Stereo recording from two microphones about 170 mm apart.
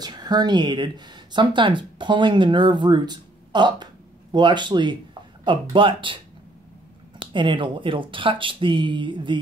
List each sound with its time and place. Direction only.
0.0 s speech: 25° right (ahead or behind)
7.2 s speech: 30° right (ahead or behind)